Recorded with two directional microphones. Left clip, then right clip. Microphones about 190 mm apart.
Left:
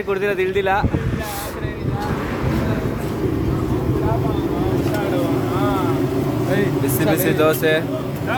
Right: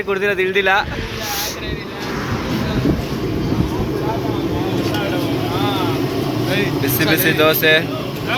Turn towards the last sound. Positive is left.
turn(degrees=5)  # may be behind; listen again after turning